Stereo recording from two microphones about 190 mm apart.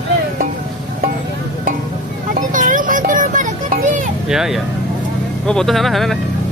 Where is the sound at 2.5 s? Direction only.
45° right (ahead or behind).